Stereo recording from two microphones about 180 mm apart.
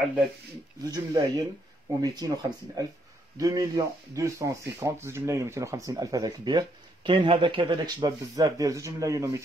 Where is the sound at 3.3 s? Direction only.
20° right (ahead or behind).